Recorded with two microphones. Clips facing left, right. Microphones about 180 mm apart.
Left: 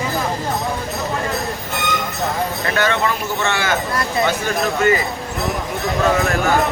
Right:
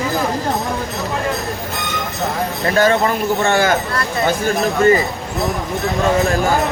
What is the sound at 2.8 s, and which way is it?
Speech, 40° right (ahead or behind).